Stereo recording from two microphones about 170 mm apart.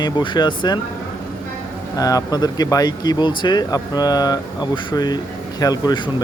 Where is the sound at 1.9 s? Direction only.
20° left (ahead or behind).